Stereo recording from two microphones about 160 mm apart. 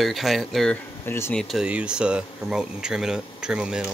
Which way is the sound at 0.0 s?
Centre (ahead or behind).